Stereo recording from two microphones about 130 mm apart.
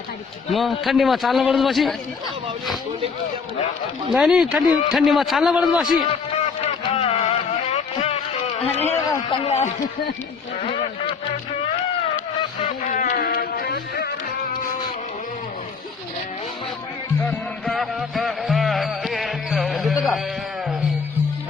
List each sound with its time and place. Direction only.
0.5 s a man's voice: centre (ahead or behind)
4.1 s a man's voice: 5° right (ahead or behind)
6.6 s music: 50° left (ahead or behind)
8.6 s a man's voice: 55° left (ahead or behind)
12.6 s a sound: 85° left
17.2 s music: centre (ahead or behind)